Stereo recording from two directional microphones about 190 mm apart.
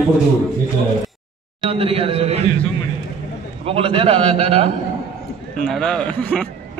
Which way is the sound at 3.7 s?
30° right (ahead or behind).